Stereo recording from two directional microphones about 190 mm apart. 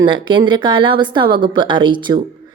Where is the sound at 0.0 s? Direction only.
25° right (ahead or behind).